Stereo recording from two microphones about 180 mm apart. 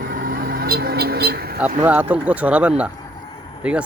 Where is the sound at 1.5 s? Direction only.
10° right (ahead or behind).